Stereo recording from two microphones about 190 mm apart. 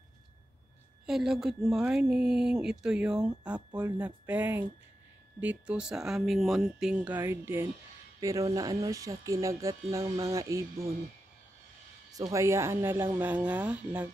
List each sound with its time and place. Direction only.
1.0 s speech: centre (ahead or behind)
12.1 s speech: 20° right (ahead or behind)